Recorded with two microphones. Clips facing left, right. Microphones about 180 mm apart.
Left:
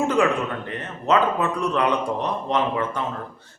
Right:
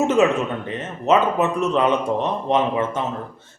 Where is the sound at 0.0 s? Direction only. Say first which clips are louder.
Right 3 dB; 20° right (ahead or behind).